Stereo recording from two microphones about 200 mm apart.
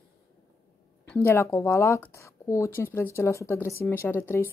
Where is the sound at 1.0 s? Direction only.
10° left (ahead or behind).